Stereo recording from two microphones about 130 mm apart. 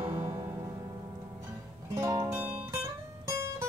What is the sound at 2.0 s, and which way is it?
Music, 25° right (ahead or behind).